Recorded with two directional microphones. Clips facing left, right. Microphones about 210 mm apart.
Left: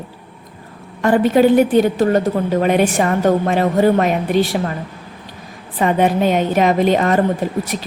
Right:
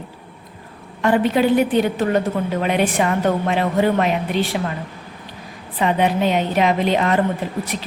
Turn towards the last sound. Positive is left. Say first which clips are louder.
# left 4 dB
turn(degrees=45)  # may be behind; listen again after turning